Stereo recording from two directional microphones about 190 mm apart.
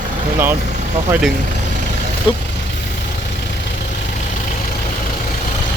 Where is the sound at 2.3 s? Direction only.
25° left (ahead or behind).